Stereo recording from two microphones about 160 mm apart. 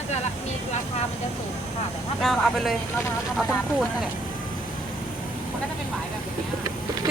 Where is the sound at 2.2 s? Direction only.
Centre (ahead or behind).